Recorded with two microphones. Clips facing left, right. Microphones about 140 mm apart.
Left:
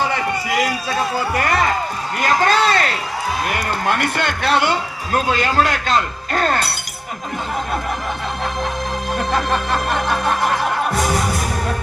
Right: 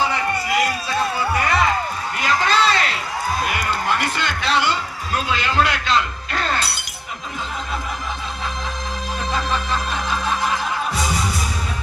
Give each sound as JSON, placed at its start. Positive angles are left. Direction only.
{"t": 1.1, "sound": "speech", "side_deg": 45}
{"t": 2.1, "sound": "a sound", "side_deg": 50}
{"t": 3.5, "sound": "a man's voice", "side_deg": 55}
{"t": 9.1, "sound": "music", "side_deg": 60}